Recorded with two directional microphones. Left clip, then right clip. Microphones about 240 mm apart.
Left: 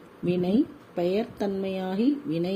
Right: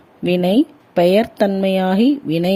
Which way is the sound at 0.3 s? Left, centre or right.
Right.